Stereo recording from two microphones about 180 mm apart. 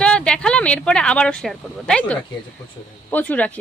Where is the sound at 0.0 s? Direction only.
5° left (ahead or behind).